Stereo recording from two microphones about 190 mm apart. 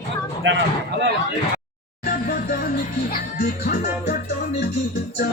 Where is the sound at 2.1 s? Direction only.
50° left (ahead or behind).